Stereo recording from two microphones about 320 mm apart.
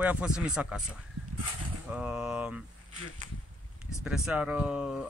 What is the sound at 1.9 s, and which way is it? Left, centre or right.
Speech, centre.